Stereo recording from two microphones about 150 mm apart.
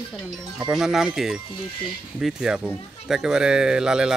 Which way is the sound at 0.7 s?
5° right (ahead or behind).